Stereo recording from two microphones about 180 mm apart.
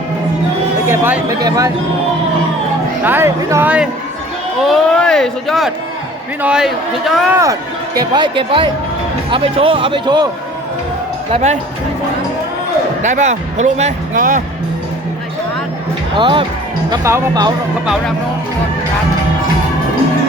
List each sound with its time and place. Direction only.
0.9 s speech: 10° right (ahead or behind)
3.0 s speech: 10° right (ahead or behind)
4.6 s speech: centre (ahead or behind)
7.9 s speech: 25° right (ahead or behind)
11.3 s speech: 35° right (ahead or behind)
13.0 s speech: 40° right (ahead or behind)
16.1 s speech: 30° right (ahead or behind)